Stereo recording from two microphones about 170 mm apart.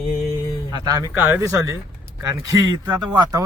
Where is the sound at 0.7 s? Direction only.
20° right (ahead or behind).